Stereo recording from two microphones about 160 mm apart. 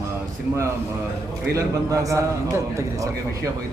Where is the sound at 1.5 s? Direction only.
20° right (ahead or behind).